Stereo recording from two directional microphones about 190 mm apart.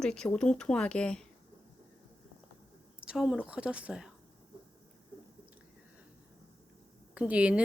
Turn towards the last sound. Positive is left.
turn(degrees=-5)  # may be behind; listen again after turning